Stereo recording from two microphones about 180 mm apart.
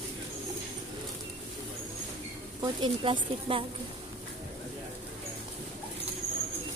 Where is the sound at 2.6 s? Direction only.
25° right (ahead or behind).